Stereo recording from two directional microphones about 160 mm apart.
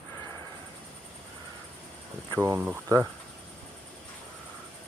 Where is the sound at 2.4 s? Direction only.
15° right (ahead or behind).